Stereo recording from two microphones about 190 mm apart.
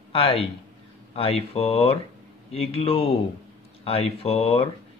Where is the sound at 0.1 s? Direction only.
30° left (ahead or behind).